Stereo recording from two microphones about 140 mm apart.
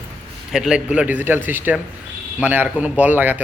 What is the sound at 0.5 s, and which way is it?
A man's voice, 5° right (ahead or behind).